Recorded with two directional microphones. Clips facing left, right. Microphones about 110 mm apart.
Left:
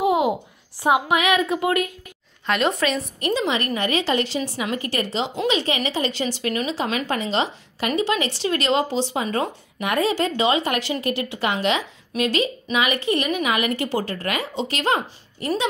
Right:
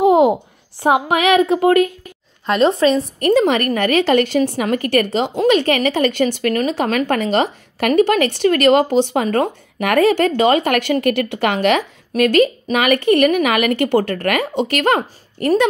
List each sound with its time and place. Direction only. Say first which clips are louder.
0.0 s a sound: right 8 dB; 50° right (ahead or behind)
0.7 s a woman's voice: right 4 dB; 50° right (ahead or behind)
2.4 s a woman's voice: right 7 dB; 35° right (ahead or behind)
3.2 s a woman's voice: right 8 dB; 50° right (ahead or behind)